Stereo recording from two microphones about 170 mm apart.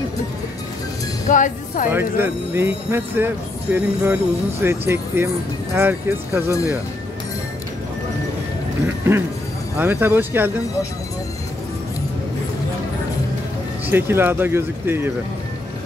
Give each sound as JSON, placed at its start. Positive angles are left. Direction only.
{"t": 1.3, "sound": "speech", "side_deg": 50}
{"t": 1.9, "sound": "speech", "side_deg": -10}
{"t": 9.8, "sound": "speech", "side_deg": -10}
{"t": 13.8, "sound": "speech", "side_deg": -15}